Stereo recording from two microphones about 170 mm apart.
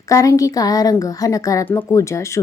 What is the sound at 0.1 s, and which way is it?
A woman's voice, 20° left (ahead or behind).